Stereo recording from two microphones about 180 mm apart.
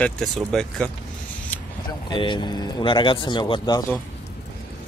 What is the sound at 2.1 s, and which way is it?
A man's voice, 25° left (ahead or behind).